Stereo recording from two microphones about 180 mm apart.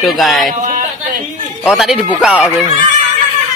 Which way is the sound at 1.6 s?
Centre (ahead or behind).